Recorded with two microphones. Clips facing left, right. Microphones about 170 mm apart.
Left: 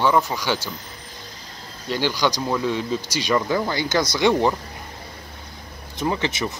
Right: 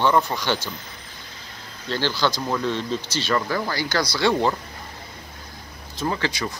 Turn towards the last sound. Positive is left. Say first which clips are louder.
# left 2 dB
turn(degrees=20)  # may be behind; listen again after turning